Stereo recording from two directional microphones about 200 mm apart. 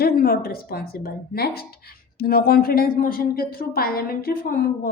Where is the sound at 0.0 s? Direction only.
50° left (ahead or behind).